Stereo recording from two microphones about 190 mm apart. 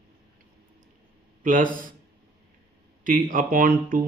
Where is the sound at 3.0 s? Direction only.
45° right (ahead or behind).